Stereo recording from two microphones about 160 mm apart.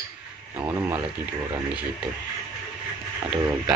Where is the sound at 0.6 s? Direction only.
15° right (ahead or behind).